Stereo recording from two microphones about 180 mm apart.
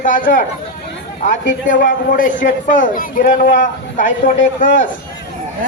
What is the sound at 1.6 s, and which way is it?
Speech, 50° left (ahead or behind).